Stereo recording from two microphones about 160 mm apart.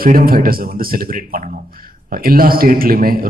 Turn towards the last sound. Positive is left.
turn(degrees=-65)  # may be behind; listen again after turning